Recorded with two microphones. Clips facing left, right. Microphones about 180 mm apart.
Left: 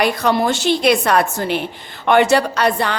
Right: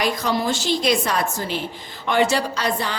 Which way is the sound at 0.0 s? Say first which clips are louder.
Left 5 dB; 60° left (ahead or behind).